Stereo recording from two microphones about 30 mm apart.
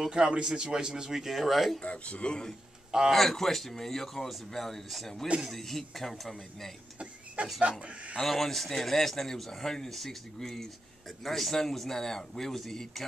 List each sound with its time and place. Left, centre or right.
0.1 s a man's voice: right
1.1 s speech: centre
1.8 s speech: left
2.2 s speech: left
3.1 s a man's voice: centre
7.4 s speech: right
8.2 s a man's voice: centre